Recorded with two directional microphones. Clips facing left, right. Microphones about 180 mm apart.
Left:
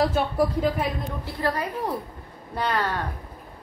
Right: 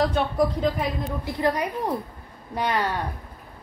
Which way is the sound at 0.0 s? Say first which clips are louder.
Even; 5° left (ahead or behind).